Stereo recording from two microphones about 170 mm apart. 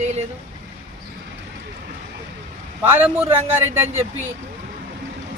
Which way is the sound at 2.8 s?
15° right (ahead or behind).